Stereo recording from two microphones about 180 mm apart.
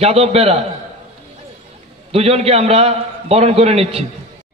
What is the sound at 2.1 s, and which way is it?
A man's voice, 35° right (ahead or behind).